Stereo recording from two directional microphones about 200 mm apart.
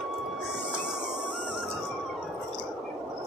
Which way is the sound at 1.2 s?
Centre (ahead or behind).